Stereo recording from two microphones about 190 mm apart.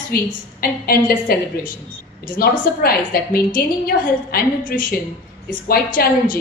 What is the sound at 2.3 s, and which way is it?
A woman's voice, 50° left (ahead or behind).